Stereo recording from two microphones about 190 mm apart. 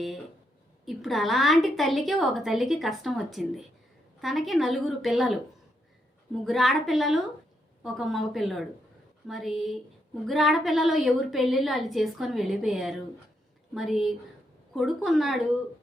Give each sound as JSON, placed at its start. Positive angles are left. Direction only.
{"t": 0.9, "sound": "a woman's voice", "side_deg": 0}
{"t": 6.4, "sound": "a woman's voice", "side_deg": 0}